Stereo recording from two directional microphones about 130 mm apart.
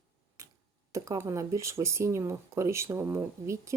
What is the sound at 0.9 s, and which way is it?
Speech, 25° right (ahead or behind).